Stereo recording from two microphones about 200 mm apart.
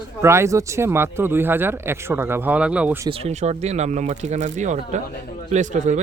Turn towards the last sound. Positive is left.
turn(degrees=-35)  # may be behind; listen again after turning